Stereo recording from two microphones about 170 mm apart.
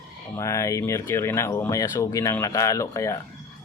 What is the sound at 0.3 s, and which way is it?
Speech, 15° left (ahead or behind).